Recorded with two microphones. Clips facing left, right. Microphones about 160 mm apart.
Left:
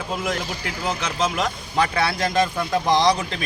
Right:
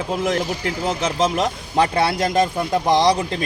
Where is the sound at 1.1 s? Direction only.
25° right (ahead or behind).